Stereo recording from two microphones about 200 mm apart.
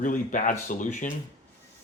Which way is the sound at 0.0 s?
40° left (ahead or behind).